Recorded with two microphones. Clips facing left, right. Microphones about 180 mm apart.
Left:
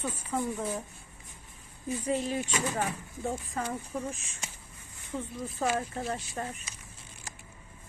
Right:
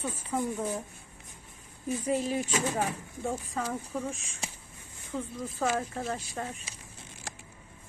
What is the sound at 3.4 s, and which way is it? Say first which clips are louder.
A woman's voice: right 1 dB; centre (ahead or behind).